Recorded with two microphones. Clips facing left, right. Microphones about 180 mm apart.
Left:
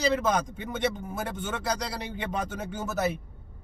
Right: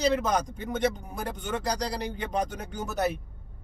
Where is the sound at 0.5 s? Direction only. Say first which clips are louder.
Right 2 dB; 45° right (ahead or behind).